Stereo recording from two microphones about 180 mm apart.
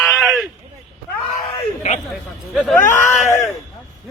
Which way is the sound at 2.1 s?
Centre (ahead or behind).